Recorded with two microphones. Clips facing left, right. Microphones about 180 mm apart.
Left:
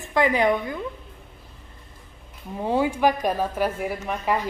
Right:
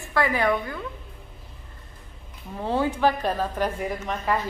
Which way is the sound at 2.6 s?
15° left (ahead or behind).